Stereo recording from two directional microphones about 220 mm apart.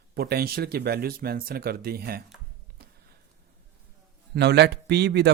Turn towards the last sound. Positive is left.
turn(degrees=-50)  # may be behind; listen again after turning